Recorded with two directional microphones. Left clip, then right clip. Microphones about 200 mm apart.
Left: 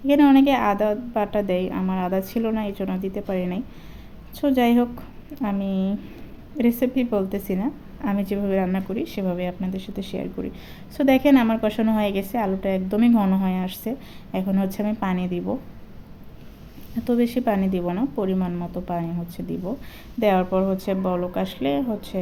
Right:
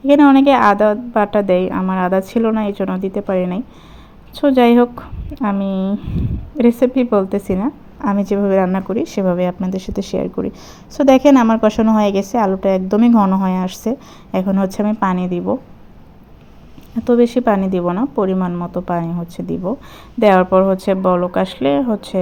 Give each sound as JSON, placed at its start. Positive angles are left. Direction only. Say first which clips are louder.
{"t": 0.1, "sound": "a woman's voice", "louder": "right 7 dB", "side_deg": -20}
{"t": 17.0, "sound": "a woman's voice", "louder": "right 9 dB", "side_deg": -15}